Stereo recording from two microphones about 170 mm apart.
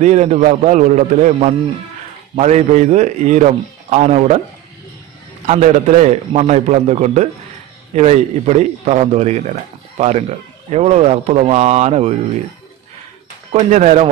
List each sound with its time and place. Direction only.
0.0 s a man's voice: 45° right (ahead or behind)
5.5 s a man's voice: 40° right (ahead or behind)
13.5 s a man's voice: 40° right (ahead or behind)